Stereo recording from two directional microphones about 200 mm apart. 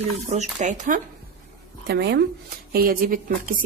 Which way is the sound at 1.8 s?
55° right (ahead or behind).